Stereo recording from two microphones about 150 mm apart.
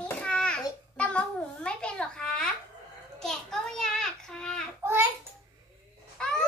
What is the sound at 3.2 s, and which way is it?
A child's voice, 5° left (ahead or behind).